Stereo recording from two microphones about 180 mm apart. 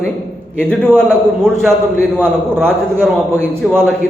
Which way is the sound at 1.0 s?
5° left (ahead or behind).